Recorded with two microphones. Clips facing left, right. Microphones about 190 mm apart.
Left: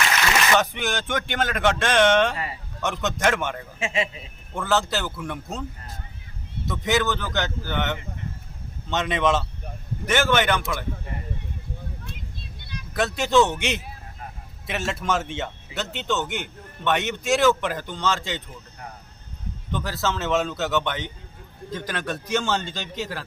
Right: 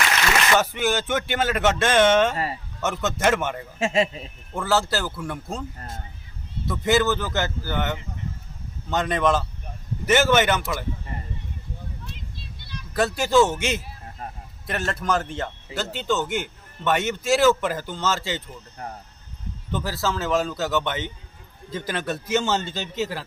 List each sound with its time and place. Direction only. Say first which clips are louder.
0.5 s speech: right 1 dB; 5° right (ahead or behind)
2.3 s a man's voice: right 4 dB; 40° right (ahead or behind)
2.8 s a man's voice: right 1 dB; 5° right (ahead or behind)
3.8 s a man's voice: right 6 dB; 40° right (ahead or behind)
4.5 s a man's voice: right 1 dB; 5° right (ahead or behind)
6.7 s a man's voice: right 3 dB; 5° right (ahead or behind)
10.1 s speech: right 2 dB; 10° right (ahead or behind)
12.9 s a man's voice: right 1 dB; centre (ahead or behind)
18.8 s a man's voice: right 5 dB; 40° right (ahead or behind)
19.7 s a man's voice: right 1 dB; 5° right (ahead or behind)